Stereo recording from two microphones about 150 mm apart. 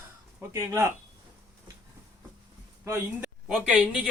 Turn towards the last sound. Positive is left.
turn(degrees=-10)  # may be behind; listen again after turning